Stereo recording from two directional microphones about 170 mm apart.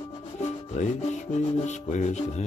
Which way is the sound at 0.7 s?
40° left (ahead or behind).